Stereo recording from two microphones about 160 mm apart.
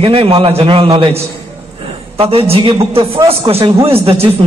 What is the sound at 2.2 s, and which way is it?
A man's voice, 35° right (ahead or behind).